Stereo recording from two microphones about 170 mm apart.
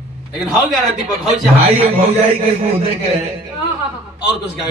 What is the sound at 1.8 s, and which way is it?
Speech, 35° right (ahead or behind).